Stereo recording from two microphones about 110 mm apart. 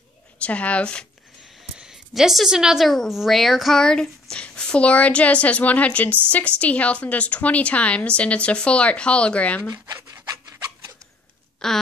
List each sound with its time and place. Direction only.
0.4 s a woman's voice: 10° left (ahead or behind)
1.8 s a woman's voice: 5° right (ahead or behind); by 9.6 s 10° left (ahead or behind)
9.9 s rub: 25° right (ahead or behind)
11.6 s speech: 5° left (ahead or behind)